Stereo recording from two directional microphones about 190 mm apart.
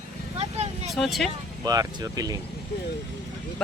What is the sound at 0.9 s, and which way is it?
Speech, centre (ahead or behind).